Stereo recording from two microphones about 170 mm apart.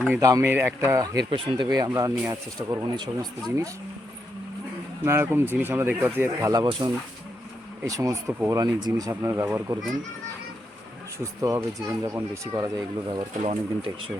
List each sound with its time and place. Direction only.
0.1 s speech: 20° right (ahead or behind)
1.3 s speech: 30° right (ahead or behind)
5.0 s speech: 15° right (ahead or behind)
11.2 s speech: 20° right (ahead or behind)
13.4 s speech: 35° right (ahead or behind)